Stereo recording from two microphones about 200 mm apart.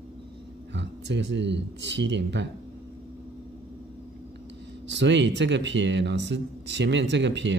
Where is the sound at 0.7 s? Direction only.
60° right (ahead or behind).